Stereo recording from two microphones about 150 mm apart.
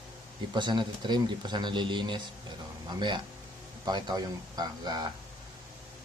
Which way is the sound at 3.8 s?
25° right (ahead or behind).